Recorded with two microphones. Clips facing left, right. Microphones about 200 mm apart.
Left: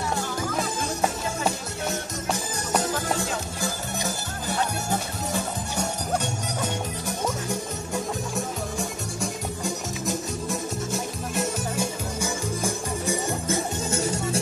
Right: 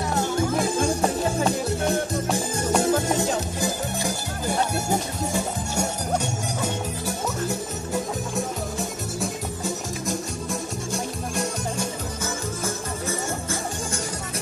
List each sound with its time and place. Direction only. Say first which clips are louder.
2.3 s music: right 4 dB; 25° right (ahead or behind); by 14.4 s 25° left (ahead or behind)